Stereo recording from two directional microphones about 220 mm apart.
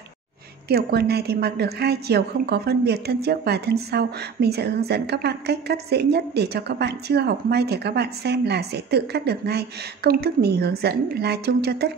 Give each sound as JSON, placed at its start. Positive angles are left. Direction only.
{"t": 0.7, "sound": "a woman's voice", "side_deg": -45}